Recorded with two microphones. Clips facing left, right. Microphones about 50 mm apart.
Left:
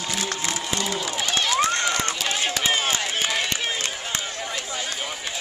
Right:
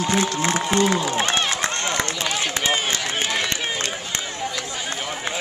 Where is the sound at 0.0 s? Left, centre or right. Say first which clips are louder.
Right 7 dB; right.